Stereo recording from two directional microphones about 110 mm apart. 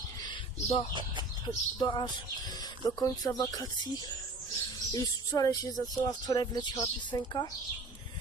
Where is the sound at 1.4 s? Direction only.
40° left (ahead or behind).